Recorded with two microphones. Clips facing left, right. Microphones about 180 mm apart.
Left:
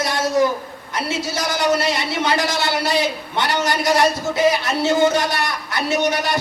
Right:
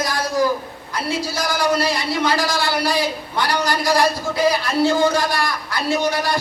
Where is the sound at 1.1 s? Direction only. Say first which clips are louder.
Right 1 dB; 20° left (ahead or behind).